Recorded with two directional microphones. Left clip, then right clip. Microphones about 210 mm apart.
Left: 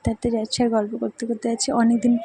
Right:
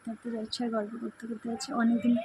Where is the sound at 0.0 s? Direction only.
30° left (ahead or behind).